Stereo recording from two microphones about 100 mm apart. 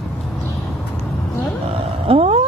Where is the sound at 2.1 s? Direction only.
80° right.